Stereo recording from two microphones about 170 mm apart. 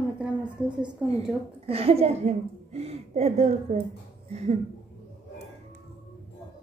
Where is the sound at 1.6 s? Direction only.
35° right (ahead or behind).